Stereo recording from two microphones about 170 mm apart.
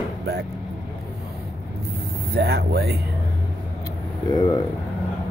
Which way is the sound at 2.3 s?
70° right (ahead or behind).